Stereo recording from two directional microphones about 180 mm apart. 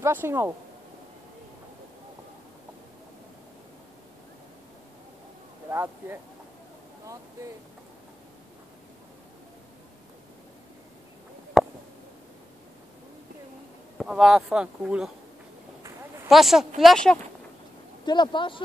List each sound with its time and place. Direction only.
0.0 s speech: 10° right (ahead or behind)
5.7 s speech: 10° right (ahead or behind)
13.9 s speech: 5° right (ahead or behind)
16.3 s speech: centre (ahead or behind)
18.0 s speech: 25° left (ahead or behind)